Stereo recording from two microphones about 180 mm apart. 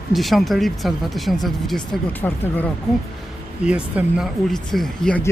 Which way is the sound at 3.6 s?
5° right (ahead or behind).